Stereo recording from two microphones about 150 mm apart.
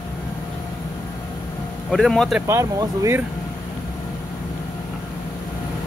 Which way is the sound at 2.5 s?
20° right (ahead or behind).